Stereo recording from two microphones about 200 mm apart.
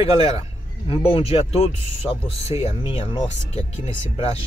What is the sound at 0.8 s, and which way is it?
Speech, 30° left (ahead or behind).